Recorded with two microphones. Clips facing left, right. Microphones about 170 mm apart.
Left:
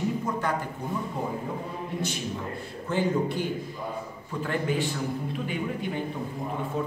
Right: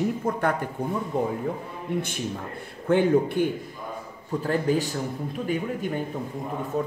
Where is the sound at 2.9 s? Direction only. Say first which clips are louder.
Right 6 dB; 60° right (ahead or behind).